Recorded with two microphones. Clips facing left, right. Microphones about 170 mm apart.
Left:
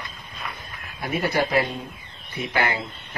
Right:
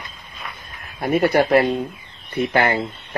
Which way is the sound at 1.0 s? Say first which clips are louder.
Right 7 dB; 55° right (ahead or behind).